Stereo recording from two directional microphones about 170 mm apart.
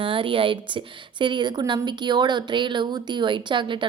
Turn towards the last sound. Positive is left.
turn(degrees=-30)  # may be behind; listen again after turning